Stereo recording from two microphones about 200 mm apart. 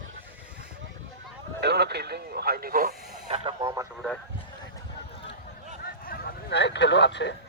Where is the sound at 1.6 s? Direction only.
55° right (ahead or behind).